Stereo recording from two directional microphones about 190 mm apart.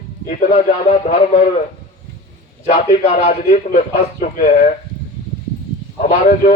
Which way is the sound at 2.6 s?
50° left (ahead or behind).